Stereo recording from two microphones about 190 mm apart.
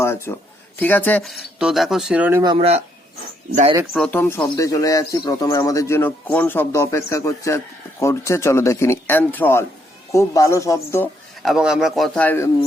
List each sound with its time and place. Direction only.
0.0 s speech: 15° left (ahead or behind); by 2.4 s 5° right (ahead or behind)
2.4 s speech: 25° right (ahead or behind)
3.9 s speech: 5° left (ahead or behind)
11.4 s speech: 5° right (ahead or behind)